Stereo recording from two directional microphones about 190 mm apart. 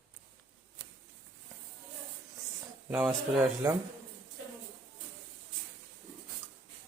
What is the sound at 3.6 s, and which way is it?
Speech, 15° right (ahead or behind).